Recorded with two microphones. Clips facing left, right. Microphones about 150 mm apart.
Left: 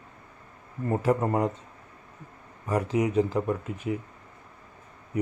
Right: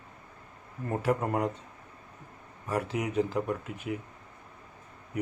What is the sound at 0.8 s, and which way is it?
Speech, 10° left (ahead or behind).